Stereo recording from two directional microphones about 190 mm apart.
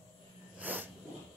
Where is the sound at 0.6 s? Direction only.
10° right (ahead or behind).